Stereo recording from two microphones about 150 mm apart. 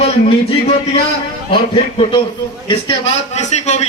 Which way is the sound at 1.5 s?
35° left (ahead or behind).